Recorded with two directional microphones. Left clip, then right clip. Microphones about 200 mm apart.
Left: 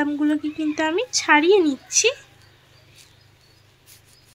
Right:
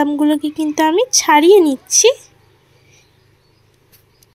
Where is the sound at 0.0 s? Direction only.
25° right (ahead or behind).